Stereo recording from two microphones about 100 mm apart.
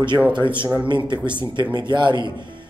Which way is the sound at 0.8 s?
50° right (ahead or behind).